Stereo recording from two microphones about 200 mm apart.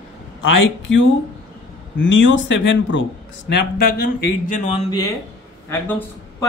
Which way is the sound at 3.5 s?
50° left (ahead or behind).